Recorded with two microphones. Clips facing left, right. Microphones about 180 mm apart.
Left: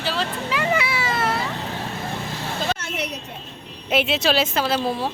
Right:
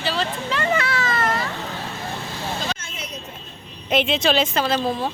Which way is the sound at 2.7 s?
70° left (ahead or behind).